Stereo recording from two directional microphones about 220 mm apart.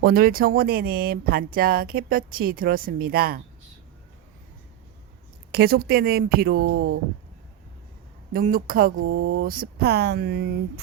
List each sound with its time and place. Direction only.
0.0 s speech: 40° right (ahead or behind)
5.5 s speech: 45° right (ahead or behind)
8.3 s speech: 40° right (ahead or behind)
9.0 s speech: 60° right (ahead or behind)
9.4 s speech: 40° right (ahead or behind)